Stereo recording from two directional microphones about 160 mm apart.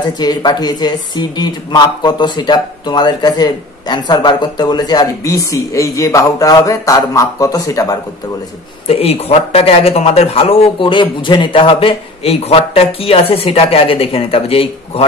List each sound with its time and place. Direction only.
0.2 s speech: 25° left (ahead or behind)
8.8 s a man's voice: 40° left (ahead or behind)